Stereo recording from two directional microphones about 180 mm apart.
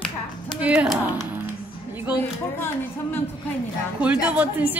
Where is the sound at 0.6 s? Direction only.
5° right (ahead or behind).